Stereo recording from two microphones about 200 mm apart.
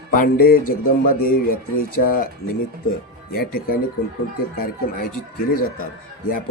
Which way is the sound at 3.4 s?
50° left (ahead or behind).